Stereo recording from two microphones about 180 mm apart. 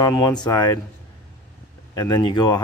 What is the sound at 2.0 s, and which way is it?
Speech, 20° left (ahead or behind).